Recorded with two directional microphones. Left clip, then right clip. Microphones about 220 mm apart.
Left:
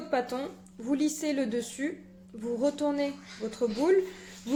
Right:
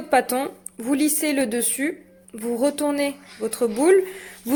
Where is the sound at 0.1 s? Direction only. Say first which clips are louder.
Right 11 dB; 45° right (ahead or behind).